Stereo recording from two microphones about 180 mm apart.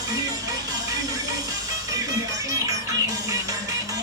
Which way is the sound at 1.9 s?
20° right (ahead or behind).